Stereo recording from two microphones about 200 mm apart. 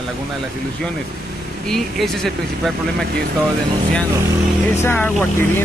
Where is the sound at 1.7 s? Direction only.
Centre (ahead or behind).